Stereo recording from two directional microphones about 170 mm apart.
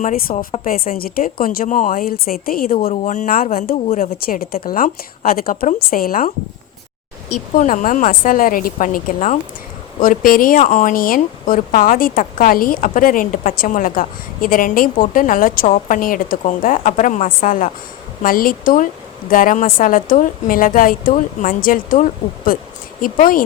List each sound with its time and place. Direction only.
0.6 s a woman's voice: 55° left (ahead or behind)
2.9 s speech: 45° left (ahead or behind)
3.8 s a woman's voice: 40° left (ahead or behind)
4.2 s a woman's voice: 60° left (ahead or behind)
7.5 s a woman's voice: 45° left (ahead or behind)